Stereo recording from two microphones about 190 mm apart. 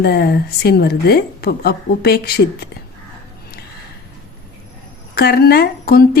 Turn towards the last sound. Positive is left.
turn(degrees=55)  # may be behind; listen again after turning